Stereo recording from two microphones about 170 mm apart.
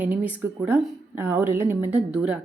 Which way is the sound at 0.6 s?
15° right (ahead or behind).